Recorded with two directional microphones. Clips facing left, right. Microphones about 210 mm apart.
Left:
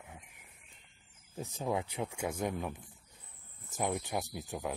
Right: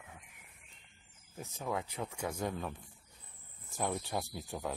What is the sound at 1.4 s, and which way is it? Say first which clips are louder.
Speech: left 3 dB; 20° left (ahead or behind).